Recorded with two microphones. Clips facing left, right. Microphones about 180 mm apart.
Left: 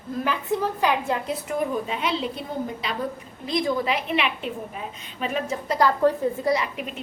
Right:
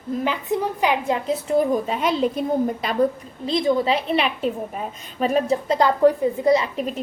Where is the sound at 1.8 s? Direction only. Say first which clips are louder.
Right 6 dB; 45° right (ahead or behind).